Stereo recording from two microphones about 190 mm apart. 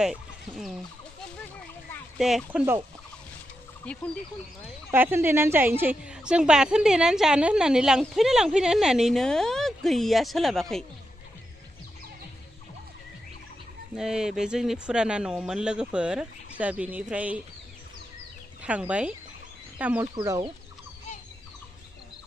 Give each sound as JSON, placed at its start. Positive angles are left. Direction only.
{"t": 0.0, "sound": "chicken", "side_deg": 0}
{"t": 2.1, "sound": "a woman's voice", "side_deg": 0}
{"t": 3.8, "sound": "a woman's voice", "side_deg": 5}
{"t": 4.9, "sound": "a woman's voice", "side_deg": -10}
{"t": 13.9, "sound": "a woman's voice", "side_deg": -5}
{"t": 18.6, "sound": "speech", "side_deg": -5}
{"t": 20.2, "sound": "speech", "side_deg": -20}